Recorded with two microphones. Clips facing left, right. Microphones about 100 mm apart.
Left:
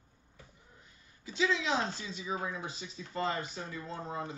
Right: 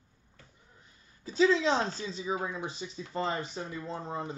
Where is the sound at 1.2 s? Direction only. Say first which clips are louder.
Right 7 dB; 40° right (ahead or behind).